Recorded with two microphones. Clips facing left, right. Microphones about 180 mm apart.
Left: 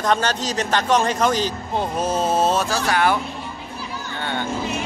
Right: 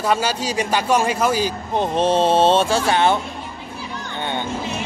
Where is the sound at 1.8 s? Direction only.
25° right (ahead or behind).